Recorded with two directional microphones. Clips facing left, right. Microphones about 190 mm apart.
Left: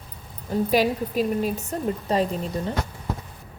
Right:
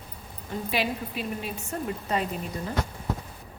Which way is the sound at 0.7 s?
40° left (ahead or behind).